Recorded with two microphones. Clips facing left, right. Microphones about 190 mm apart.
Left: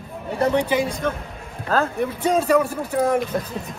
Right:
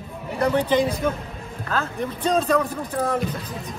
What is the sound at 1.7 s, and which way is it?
Speech, 35° left (ahead or behind).